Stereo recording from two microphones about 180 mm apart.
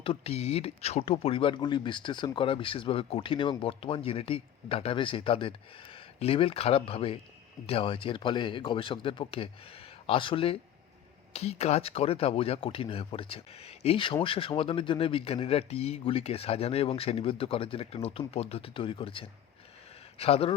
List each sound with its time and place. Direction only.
0.0 s speech: 30° left (ahead or behind)